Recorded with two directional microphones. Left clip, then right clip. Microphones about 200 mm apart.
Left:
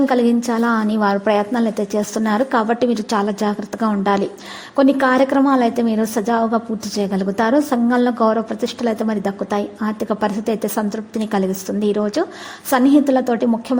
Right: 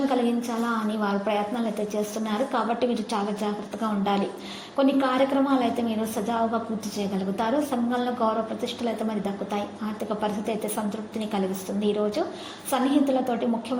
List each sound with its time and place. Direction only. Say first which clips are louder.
0.1 s a woman's voice: left 9 dB; 50° left (ahead or behind)